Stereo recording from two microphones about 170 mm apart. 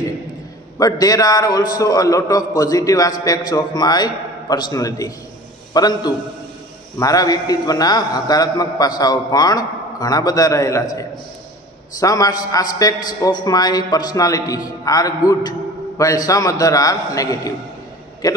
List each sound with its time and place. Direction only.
0.7 s a man's voice: 20° left (ahead or behind)
12.0 s a man's voice: 20° left (ahead or behind)